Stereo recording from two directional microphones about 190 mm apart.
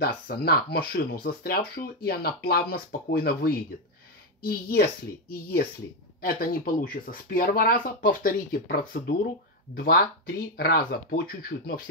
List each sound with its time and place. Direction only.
0.0 s speech: 55° left (ahead or behind)
6.2 s speech: 50° left (ahead or behind)